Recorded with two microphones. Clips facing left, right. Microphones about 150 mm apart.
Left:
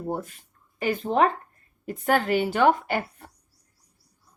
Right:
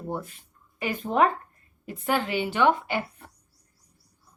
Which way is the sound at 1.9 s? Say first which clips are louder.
Left 4 dB; 45° left (ahead or behind).